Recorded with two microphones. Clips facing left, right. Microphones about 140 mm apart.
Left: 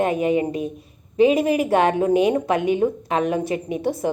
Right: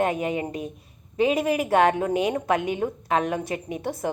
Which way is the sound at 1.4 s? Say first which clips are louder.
Left 2 dB; 30° left (ahead or behind).